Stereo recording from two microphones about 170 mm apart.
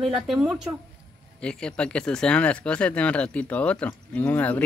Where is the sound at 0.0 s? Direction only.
Centre (ahead or behind).